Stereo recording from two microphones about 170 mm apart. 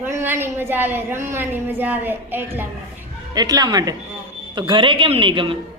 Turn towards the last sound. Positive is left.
turn(degrees=-30)  # may be behind; listen again after turning